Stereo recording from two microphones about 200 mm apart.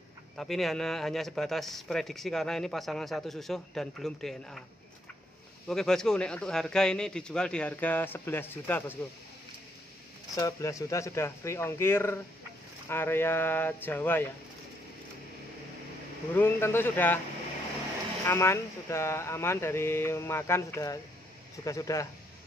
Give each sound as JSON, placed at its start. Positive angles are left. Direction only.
{"t": 0.4, "sound": "a man's voice", "side_deg": 0}
{"t": 5.7, "sound": "a man's voice", "side_deg": 5}
{"t": 10.3, "sound": "speech", "side_deg": 15}
{"t": 16.3, "sound": "speech", "side_deg": 10}
{"t": 18.2, "sound": "speech", "side_deg": 15}